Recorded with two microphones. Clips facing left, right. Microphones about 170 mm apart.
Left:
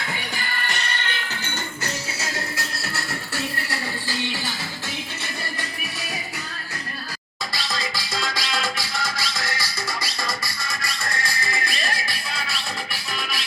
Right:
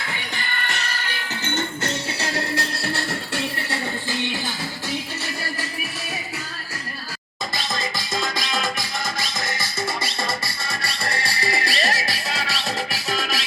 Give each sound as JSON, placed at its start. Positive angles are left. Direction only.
{"t": 0.6, "sound": "music", "side_deg": 0}
{"t": 1.5, "sound": "music", "side_deg": -25}
{"t": 2.3, "sound": "music", "side_deg": 0}
{"t": 2.8, "sound": "music", "side_deg": -30}
{"t": 3.7, "sound": "music", "side_deg": -20}
{"t": 7.5, "sound": "music", "side_deg": -20}
{"t": 11.6, "sound": "music", "side_deg": -85}